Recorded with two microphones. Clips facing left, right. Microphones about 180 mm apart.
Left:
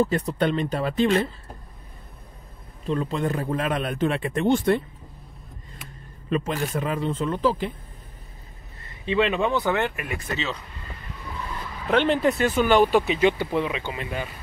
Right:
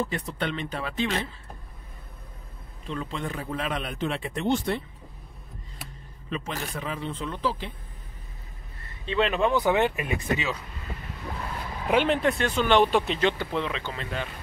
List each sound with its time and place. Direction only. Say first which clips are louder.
0.0 s speech: left 7 dB; 40° left (ahead or behind)
2.9 s a man's voice: left 7 dB; 40° left (ahead or behind)
6.3 s a man's voice: left 7 dB; 45° left (ahead or behind)
9.0 s speech: left 2 dB; 5° left (ahead or behind)
9.5 s speech: right 1 dB; 15° right (ahead or behind)
11.9 s speech: left 2 dB; 5° right (ahead or behind)